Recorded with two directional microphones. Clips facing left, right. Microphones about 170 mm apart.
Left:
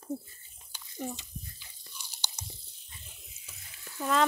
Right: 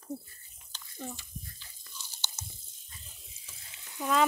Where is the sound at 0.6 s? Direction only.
10° left (ahead or behind).